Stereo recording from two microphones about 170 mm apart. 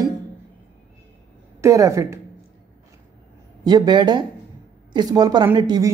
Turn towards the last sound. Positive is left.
turn(degrees=-25)  # may be behind; listen again after turning